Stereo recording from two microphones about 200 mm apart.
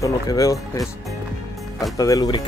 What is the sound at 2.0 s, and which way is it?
Speech, 20° left (ahead or behind).